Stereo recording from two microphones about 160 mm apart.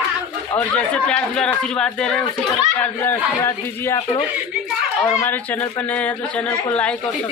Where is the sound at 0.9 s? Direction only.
5° left (ahead or behind).